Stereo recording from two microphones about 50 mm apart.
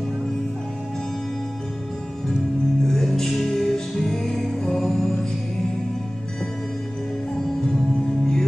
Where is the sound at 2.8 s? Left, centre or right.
Centre.